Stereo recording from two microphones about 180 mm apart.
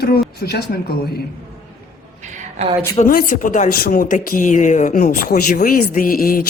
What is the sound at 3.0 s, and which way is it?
Speech, 50° left (ahead or behind).